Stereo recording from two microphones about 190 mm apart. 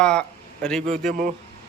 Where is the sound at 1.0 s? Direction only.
45° right (ahead or behind).